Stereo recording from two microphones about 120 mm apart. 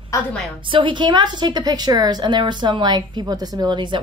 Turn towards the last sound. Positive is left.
turn(degrees=-40)  # may be behind; listen again after turning